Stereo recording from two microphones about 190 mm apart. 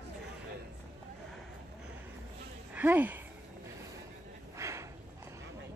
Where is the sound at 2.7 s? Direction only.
10° right (ahead or behind).